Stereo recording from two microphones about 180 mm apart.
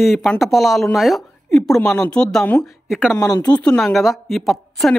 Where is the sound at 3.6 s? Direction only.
5° left (ahead or behind).